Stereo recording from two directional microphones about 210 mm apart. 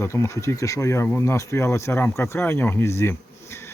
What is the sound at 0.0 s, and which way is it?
Speech, 15° left (ahead or behind).